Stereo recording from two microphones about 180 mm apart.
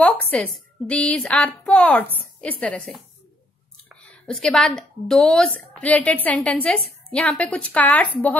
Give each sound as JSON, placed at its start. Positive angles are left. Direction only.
{"t": 0.0, "sound": "a woman's voice", "side_deg": 10}